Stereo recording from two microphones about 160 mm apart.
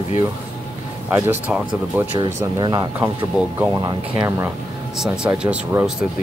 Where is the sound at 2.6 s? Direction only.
20° right (ahead or behind).